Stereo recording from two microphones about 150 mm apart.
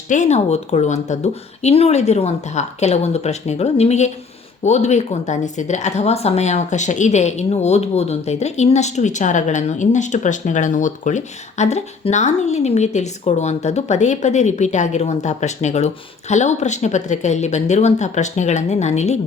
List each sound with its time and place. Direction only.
0.1 s speech: 50° left (ahead or behind)